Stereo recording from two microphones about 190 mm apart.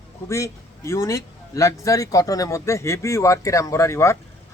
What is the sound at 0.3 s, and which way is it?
Speech, 15° left (ahead or behind).